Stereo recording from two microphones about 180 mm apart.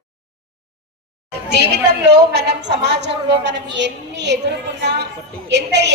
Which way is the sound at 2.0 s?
70° right (ahead or behind).